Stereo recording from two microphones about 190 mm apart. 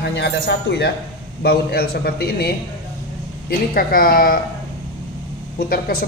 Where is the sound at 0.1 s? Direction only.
65° left (ahead or behind); by 4.4 s 50° left (ahead or behind).